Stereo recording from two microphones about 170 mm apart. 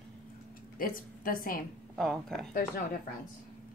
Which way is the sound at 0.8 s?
55° left (ahead or behind).